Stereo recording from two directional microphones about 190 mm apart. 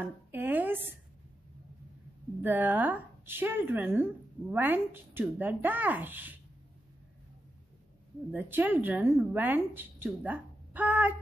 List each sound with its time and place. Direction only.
0.0 s a sound: 10° right (ahead or behind)
2.4 s speech: 10° right (ahead or behind)
8.3 s speech: 10° right (ahead or behind)